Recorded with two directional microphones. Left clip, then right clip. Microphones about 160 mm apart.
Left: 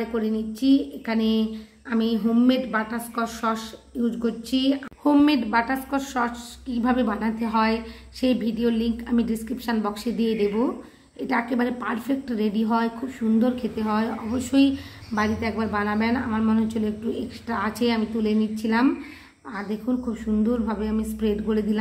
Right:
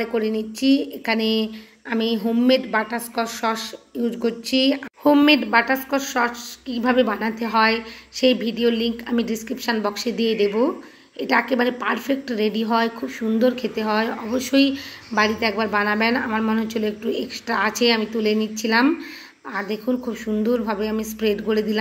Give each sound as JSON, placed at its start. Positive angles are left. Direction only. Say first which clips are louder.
{"t": 0.0, "sound": "a woman's voice", "louder": "right 4 dB", "side_deg": -30}